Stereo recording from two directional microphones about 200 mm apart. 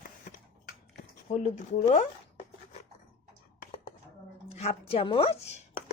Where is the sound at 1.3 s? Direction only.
35° left (ahead or behind).